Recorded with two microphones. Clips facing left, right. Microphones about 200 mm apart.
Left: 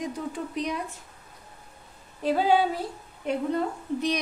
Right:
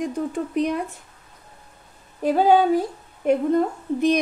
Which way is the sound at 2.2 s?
50° right (ahead or behind).